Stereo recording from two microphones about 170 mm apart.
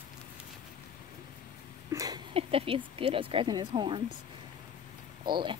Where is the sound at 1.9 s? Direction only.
20° right (ahead or behind).